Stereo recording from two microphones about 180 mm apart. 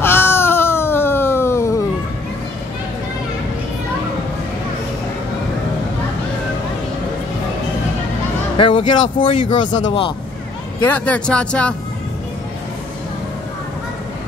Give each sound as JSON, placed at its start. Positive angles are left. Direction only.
{"t": 0.0, "sound": "baby cry", "side_deg": 10}
{"t": 8.5, "sound": "speech", "side_deg": 30}
{"t": 10.8, "sound": "speech", "side_deg": 10}